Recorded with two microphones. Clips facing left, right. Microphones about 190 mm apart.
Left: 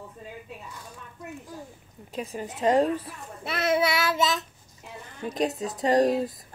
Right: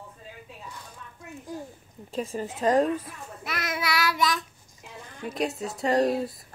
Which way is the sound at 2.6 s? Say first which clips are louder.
Left 1 dB; 25° left (ahead or behind).